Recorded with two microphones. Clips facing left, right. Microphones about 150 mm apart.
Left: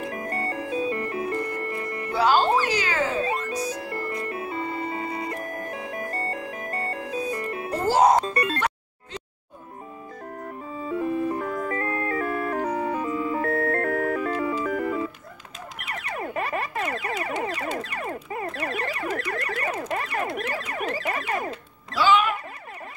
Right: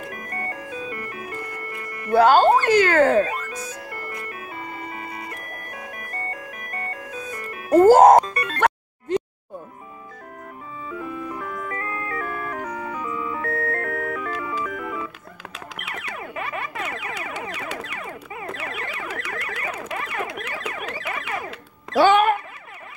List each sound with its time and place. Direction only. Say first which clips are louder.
0.1 s music: left 4 dB; 25° left (ahead or behind)
2.1 s speech: right 6 dB; 55° right (ahead or behind)
3.3 s music: left 4 dB; 30° left (ahead or behind)
7.7 s speech: right 9 dB; 50° right (ahead or behind)
8.3 s music: left 3 dB; 30° left (ahead or behind)
8.5 s music: right 6 dB; 55° right (ahead or behind)
10.8 s music: left 6 dB; 35° left (ahead or behind)
17.7 s a sound: left 3 dB; 40° left (ahead or behind)
20.7 s siren: left 3 dB; 40° left (ahead or behind)
21.9 s a sound: right 5 dB; 55° right (ahead or behind)